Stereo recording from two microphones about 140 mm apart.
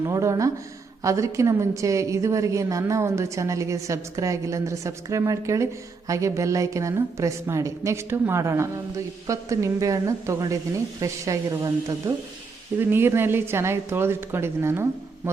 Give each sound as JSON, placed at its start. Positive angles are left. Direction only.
{"t": 0.0, "sound": "a woman's voice", "side_deg": -25}